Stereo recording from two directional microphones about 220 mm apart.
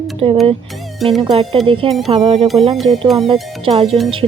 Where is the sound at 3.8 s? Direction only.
Centre (ahead or behind).